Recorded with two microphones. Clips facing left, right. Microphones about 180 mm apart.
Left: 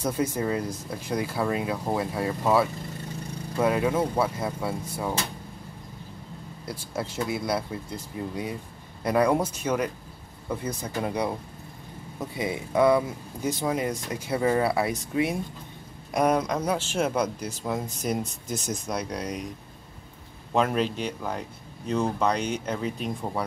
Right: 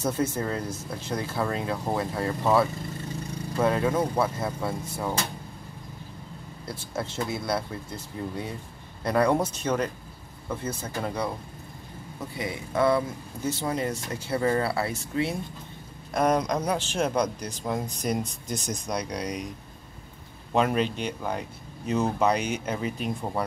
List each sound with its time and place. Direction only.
0.0 s speech: 10° left (ahead or behind)
6.7 s speech: 10° left (ahead or behind)
12.4 s speech: 20° left (ahead or behind); by 19.4 s 5° left (ahead or behind)
20.5 s speech: centre (ahead or behind)